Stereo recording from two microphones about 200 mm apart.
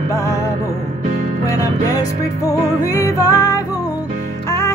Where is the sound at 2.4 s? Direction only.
15° left (ahead or behind).